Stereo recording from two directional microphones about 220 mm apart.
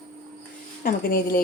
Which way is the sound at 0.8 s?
45° left (ahead or behind).